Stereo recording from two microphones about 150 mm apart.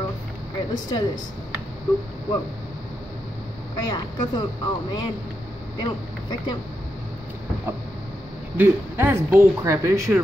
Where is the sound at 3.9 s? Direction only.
30° left (ahead or behind).